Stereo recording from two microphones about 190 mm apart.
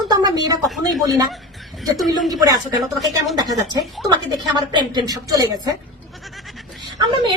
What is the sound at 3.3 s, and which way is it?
Speech, 20° right (ahead or behind).